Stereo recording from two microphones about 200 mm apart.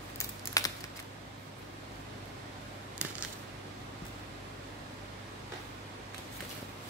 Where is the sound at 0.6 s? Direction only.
15° left (ahead or behind).